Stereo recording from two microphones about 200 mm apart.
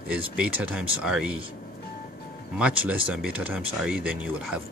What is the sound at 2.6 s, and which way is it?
Speech, 5° right (ahead or behind).